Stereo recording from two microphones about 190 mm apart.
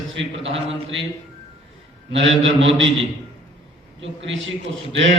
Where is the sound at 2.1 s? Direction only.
75° right (ahead or behind).